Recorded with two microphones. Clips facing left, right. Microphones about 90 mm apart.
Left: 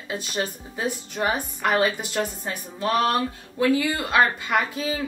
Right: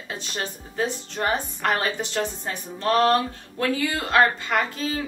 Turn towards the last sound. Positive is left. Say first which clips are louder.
# left 1 dB
turn(degrees=10)  # may be behind; listen again after turning